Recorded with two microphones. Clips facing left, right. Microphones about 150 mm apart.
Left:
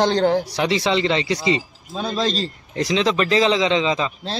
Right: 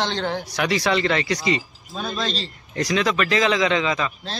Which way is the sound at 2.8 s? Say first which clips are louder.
Left 2 dB; 25° left (ahead or behind).